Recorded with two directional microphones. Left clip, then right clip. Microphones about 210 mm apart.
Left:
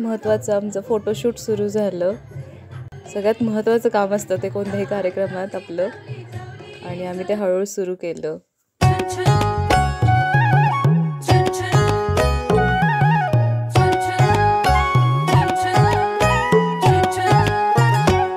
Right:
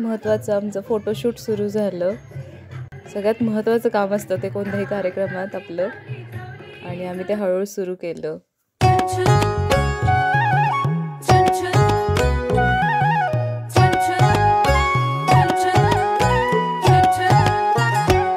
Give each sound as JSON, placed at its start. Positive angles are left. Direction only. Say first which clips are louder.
{"t": 0.0, "sound": "speech", "louder": "left 1 dB", "side_deg": 0}
{"t": 6.9, "sound": "a sound", "louder": "left 1 dB", "side_deg": 0}
{"t": 11.3, "sound": "music", "louder": "right 3 dB", "side_deg": 0}